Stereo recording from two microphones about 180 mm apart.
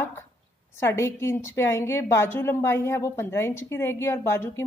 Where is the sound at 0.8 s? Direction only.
15° left (ahead or behind).